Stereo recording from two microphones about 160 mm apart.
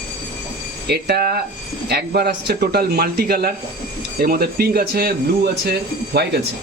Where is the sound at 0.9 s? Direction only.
90° right.